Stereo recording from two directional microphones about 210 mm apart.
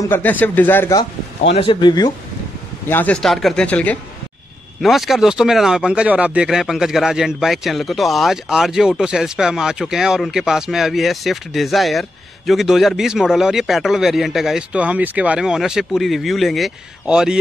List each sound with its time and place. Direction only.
0.0 s speech: 10° left (ahead or behind)
1.5 s speech: 25° left (ahead or behind)
2.9 s speech: 5° left (ahead or behind)